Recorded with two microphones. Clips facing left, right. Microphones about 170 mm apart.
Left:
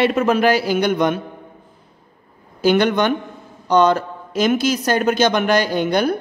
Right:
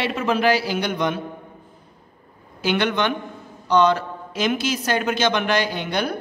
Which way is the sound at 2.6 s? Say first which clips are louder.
Left 6 dB; 40° left (ahead or behind).